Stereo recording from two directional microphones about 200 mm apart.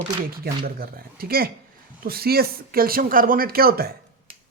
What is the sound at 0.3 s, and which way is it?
Speech, 50° right (ahead or behind).